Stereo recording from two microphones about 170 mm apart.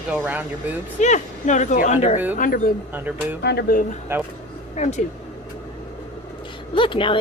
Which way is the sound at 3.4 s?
75° left (ahead or behind).